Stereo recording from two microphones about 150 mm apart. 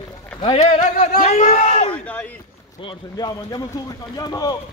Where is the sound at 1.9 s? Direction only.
10° left (ahead or behind).